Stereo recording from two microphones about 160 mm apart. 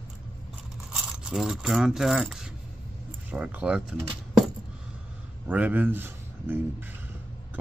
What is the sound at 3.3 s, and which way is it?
Speech, 10° right (ahead or behind).